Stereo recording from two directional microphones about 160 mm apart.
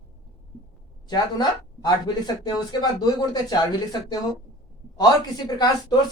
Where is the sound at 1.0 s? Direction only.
25° left (ahead or behind).